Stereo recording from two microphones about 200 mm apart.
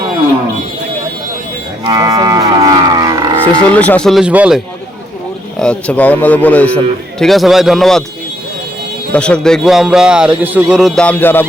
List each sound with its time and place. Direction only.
1.8 s cattle: 20° right (ahead or behind)
3.8 s a man's voice: 5° left (ahead or behind)
5.5 s a man's voice: 5° left (ahead or behind)
9.1 s a man's voice: 5° left (ahead or behind)